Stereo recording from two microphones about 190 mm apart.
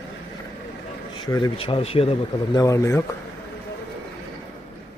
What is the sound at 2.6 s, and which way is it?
Speech, 15° left (ahead or behind).